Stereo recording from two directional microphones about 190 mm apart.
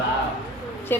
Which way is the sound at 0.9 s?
10° left (ahead or behind).